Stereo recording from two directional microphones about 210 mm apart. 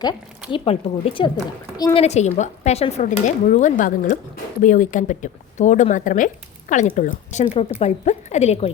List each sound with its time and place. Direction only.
0.5 s a woman's voice: 25° left (ahead or behind)